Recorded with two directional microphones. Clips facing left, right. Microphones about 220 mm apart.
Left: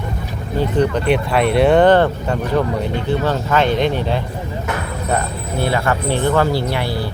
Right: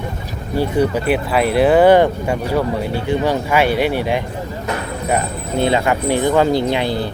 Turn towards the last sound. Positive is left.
turn(degrees=-20)  # may be behind; listen again after turning